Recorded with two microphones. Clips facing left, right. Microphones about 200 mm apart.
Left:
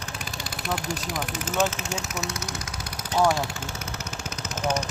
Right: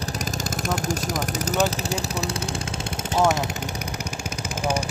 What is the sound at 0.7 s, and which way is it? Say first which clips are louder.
Speech: right 3 dB; 45° right (ahead or behind).